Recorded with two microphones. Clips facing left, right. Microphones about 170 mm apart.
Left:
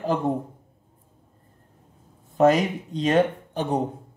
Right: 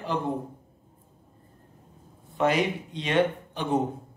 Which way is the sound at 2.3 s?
40° left (ahead or behind).